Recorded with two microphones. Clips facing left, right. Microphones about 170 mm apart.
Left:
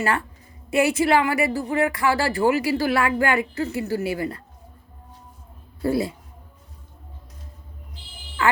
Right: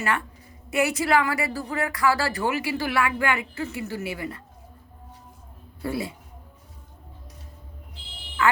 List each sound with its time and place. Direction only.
0.7 s a woman's voice: 30° left (ahead or behind)
5.8 s a woman's voice: 40° left (ahead or behind)
8.4 s speech: 30° left (ahead or behind)